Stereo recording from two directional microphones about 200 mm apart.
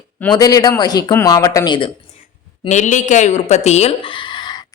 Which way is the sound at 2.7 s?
35° left (ahead or behind).